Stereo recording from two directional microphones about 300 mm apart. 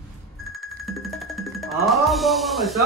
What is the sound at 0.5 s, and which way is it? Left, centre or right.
Music, centre.